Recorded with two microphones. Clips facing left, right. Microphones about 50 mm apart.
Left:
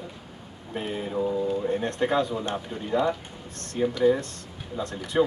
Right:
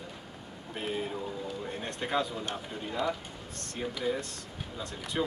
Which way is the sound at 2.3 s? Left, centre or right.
Left.